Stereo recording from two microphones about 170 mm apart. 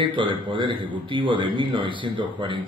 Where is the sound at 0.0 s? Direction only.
30° right (ahead or behind).